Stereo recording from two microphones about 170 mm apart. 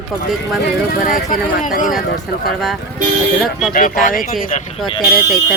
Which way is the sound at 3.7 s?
50° left (ahead or behind).